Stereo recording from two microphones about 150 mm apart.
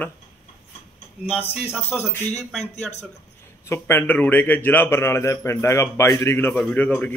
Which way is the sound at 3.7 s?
15° left (ahead or behind).